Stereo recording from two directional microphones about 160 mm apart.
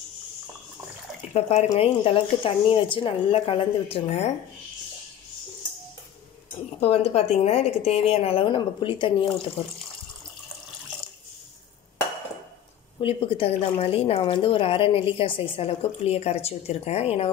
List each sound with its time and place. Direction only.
1.3 s a woman's voice: 40° left (ahead or behind)
6.8 s a woman's voice: 40° left (ahead or behind)
13.0 s a woman's voice: 35° left (ahead or behind)